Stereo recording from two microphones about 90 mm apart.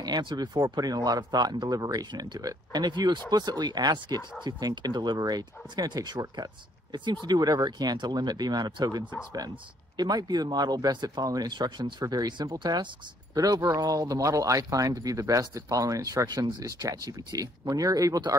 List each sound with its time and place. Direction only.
0.0 s speech: 55° right (ahead or behind)
0.6 s speech: 45° right (ahead or behind)